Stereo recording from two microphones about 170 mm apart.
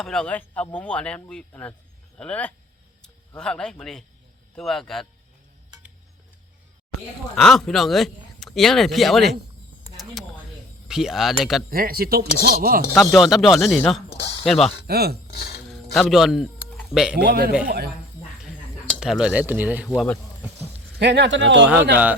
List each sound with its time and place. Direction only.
0.0 s a man's voice: 5° left (ahead or behind)
7.3 s speech: 5° left (ahead or behind)
10.8 s speech: 5° right (ahead or behind)
11.7 s speech: 60° right (ahead or behind)
13.0 s speech: centre (ahead or behind)
14.8 s speech: 70° right (ahead or behind)
15.3 s a sound: 80° left
15.7 s a sound: centre (ahead or behind)
17.2 s speech: 65° right (ahead or behind)
18.9 s speech: centre (ahead or behind)
21.0 s a man's voice: 90° right